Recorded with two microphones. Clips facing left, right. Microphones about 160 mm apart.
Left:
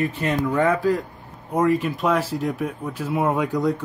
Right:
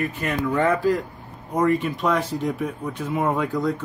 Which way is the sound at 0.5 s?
5° left (ahead or behind).